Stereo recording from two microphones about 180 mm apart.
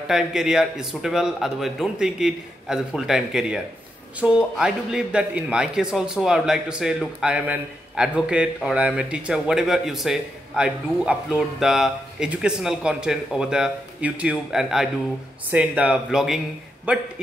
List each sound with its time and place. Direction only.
0.1 s a man's voice: 5° right (ahead or behind)